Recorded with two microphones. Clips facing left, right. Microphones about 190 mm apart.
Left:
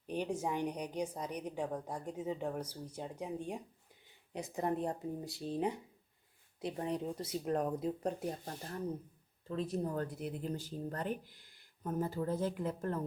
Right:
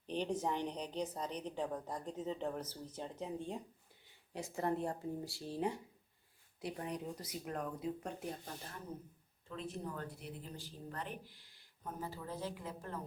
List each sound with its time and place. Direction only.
0.1 s a woman's voice: 10° left (ahead or behind); by 8.1 s 35° left (ahead or behind)
9.5 s speech: 40° left (ahead or behind)